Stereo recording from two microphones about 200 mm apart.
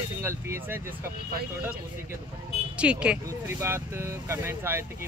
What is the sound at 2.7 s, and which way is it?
Speech, 5° right (ahead or behind).